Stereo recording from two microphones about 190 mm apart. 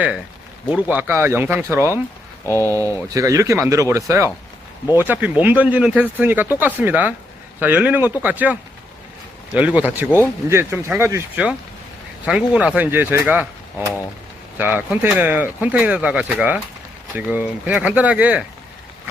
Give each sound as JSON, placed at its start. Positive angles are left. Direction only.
{"t": 0.7, "sound": "speech", "side_deg": -10}
{"t": 2.5, "sound": "speech", "side_deg": 15}
{"t": 2.7, "sound": "speech", "side_deg": -15}
{"t": 9.6, "sound": "speech", "side_deg": -10}